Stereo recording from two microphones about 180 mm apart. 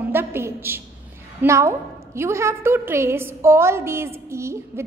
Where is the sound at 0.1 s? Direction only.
10° right (ahead or behind).